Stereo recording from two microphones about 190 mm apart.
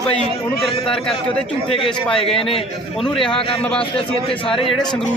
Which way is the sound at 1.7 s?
30° left (ahead or behind).